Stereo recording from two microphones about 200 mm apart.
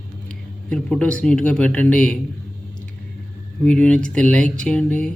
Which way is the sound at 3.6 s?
5° left (ahead or behind).